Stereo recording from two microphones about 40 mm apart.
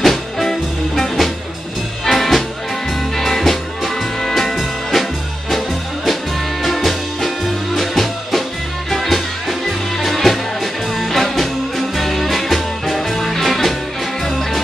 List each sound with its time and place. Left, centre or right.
0.0 s music: centre
6.6 s music: centre